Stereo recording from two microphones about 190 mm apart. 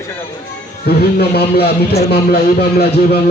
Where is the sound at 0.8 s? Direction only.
55° left (ahead or behind).